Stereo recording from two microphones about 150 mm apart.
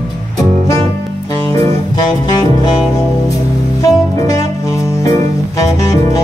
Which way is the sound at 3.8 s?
20° left (ahead or behind).